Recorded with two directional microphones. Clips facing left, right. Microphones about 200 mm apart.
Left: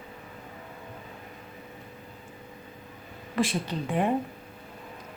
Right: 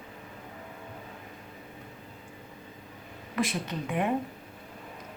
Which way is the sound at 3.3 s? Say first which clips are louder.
Left 3 dB; 30° left (ahead or behind).